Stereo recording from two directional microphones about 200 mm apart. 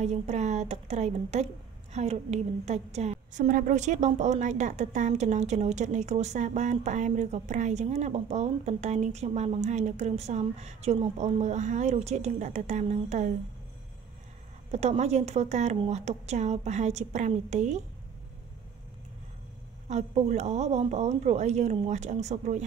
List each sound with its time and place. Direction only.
0.0 s a woman's voice: 35° right (ahead or behind)
14.7 s a woman's voice: 35° right (ahead or behind)
19.9 s a woman's voice: 35° right (ahead or behind)